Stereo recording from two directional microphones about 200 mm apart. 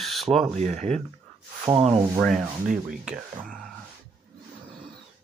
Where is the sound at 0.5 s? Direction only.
35° right (ahead or behind).